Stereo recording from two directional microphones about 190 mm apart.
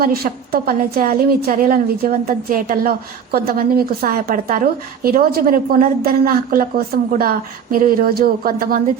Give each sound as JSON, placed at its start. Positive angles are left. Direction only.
{"t": 0.0, "sound": "a woman's voice", "side_deg": -50}